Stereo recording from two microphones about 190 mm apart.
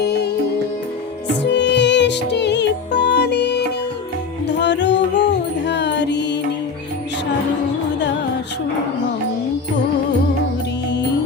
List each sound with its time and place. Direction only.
0.0 s music: 60° left (ahead or behind)
1.4 s music: 65° left (ahead or behind)